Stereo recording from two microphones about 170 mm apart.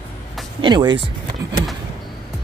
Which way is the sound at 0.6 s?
25° right (ahead or behind).